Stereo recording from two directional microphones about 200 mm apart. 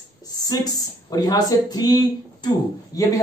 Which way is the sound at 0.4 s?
20° left (ahead or behind).